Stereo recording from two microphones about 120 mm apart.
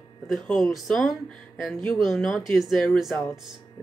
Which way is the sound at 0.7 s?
Centre (ahead or behind).